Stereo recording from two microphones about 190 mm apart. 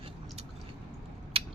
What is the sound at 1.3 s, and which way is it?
Mechanisms, 30° right (ahead or behind).